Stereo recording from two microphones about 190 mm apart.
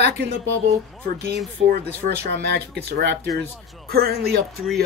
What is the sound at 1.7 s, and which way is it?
Speech, 55° right (ahead or behind).